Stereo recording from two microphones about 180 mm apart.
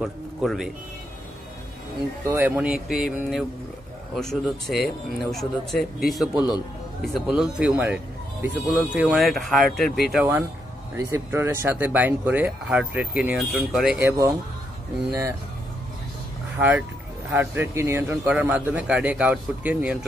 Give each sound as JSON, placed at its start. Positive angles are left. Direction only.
{"t": 0.0, "sound": "a man's voice", "side_deg": 0}
{"t": 2.2, "sound": "speech", "side_deg": -10}
{"t": 11.1, "sound": "speech", "side_deg": -15}
{"t": 13.9, "sound": "speech", "side_deg": -15}
{"t": 16.5, "sound": "speech", "side_deg": -10}